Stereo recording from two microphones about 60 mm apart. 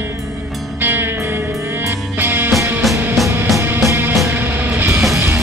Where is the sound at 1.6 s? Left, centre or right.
Right.